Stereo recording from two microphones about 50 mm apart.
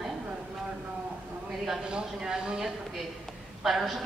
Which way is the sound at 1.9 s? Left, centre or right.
Centre.